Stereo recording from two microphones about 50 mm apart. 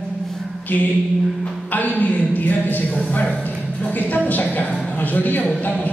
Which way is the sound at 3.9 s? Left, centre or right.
Left.